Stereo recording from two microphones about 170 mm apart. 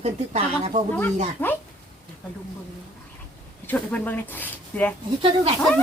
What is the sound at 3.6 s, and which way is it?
Speech, 10° left (ahead or behind).